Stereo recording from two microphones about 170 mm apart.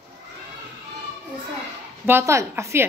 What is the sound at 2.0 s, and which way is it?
Speech, 15° right (ahead or behind).